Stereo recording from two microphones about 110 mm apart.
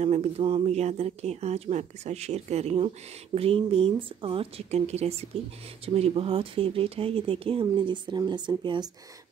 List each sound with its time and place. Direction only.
0.0 s speech: 90° right
0.4 s speech: 55° right (ahead or behind)